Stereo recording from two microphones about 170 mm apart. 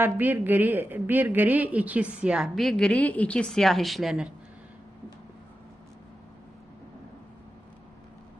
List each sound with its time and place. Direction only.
0.0 s a woman's voice: 10° right (ahead or behind)